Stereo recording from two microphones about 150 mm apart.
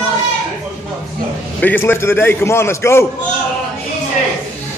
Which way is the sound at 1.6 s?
15° left (ahead or behind).